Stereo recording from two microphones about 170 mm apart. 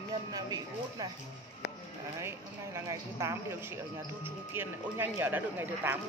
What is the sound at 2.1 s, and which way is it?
Speech, 15° right (ahead or behind).